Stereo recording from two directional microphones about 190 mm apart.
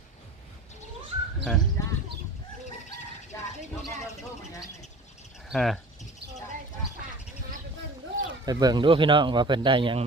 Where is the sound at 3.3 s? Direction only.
15° left (ahead or behind).